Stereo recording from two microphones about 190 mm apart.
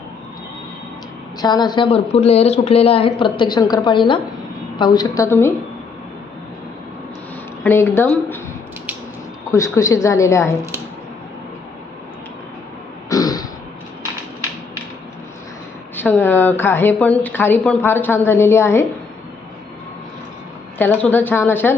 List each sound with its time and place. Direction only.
1.4 s speech: 20° left (ahead or behind)
7.6 s speech: 10° left (ahead or behind)
9.5 s speech: 15° left (ahead or behind)
13.1 s throat clearing: 20° left (ahead or behind)
16.0 s speech: 10° left (ahead or behind)
20.7 s speech: 10° left (ahead or behind)